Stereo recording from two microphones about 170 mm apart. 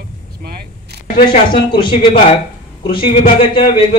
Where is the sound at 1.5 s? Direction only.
30° left (ahead or behind).